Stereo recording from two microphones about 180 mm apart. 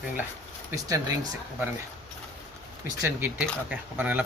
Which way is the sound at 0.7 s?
20° right (ahead or behind).